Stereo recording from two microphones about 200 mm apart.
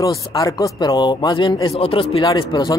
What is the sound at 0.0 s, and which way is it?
Speech, 15° left (ahead or behind).